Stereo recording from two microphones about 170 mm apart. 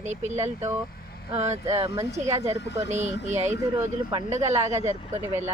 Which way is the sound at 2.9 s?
45° right (ahead or behind).